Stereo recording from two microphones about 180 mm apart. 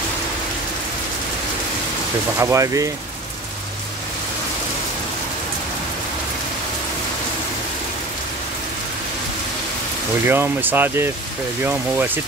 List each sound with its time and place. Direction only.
2.3 s speech: 15° right (ahead or behind)
10.2 s speech: 10° right (ahead or behind)